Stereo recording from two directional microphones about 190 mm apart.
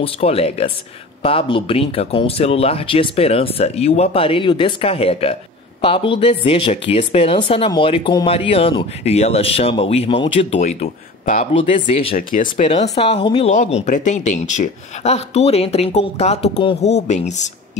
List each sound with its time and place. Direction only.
0.0 s speech: 30° left (ahead or behind)
12.2 s speech: 45° left (ahead or behind)